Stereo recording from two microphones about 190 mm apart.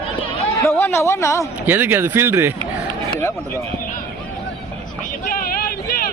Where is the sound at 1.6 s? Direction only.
10° right (ahead or behind).